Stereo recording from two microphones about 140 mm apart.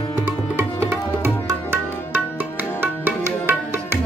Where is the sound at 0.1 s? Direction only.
15° right (ahead or behind).